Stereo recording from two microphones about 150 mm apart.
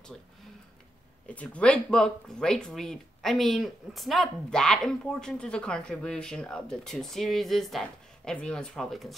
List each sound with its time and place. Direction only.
1.2 s speech: 10° left (ahead or behind)